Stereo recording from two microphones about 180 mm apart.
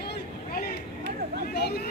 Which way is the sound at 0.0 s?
60° left (ahead or behind).